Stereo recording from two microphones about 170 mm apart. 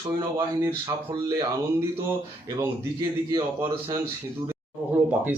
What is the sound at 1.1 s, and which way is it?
Speech, 25° right (ahead or behind).